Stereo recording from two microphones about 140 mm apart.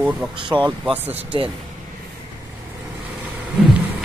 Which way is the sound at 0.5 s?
35° right (ahead or behind).